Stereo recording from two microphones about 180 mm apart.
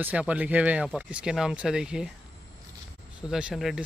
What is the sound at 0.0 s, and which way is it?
Speech, 10° right (ahead or behind).